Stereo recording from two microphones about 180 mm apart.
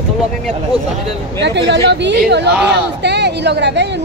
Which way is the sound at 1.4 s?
75° right (ahead or behind).